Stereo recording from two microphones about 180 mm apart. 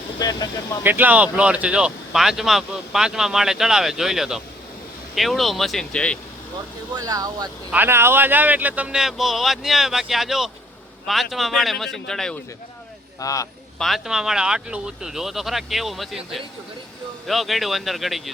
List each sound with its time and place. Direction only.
0.2 s speech: 20° left (ahead or behind)
0.9 s speech: 10° right (ahead or behind)
6.9 s speech: 20° right (ahead or behind); by 12.4 s 5° left (ahead or behind)
13.1 s speech: 20° left (ahead or behind)
13.7 s speech: centre (ahead or behind)
17.2 s speech: centre (ahead or behind)